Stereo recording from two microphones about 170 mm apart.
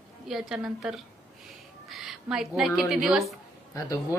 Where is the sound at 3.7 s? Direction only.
20° left (ahead or behind).